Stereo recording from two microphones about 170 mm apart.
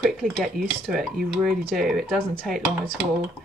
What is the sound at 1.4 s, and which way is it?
Speech, centre (ahead or behind).